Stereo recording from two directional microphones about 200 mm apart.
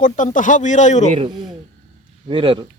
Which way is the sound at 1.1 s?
25° right (ahead or behind).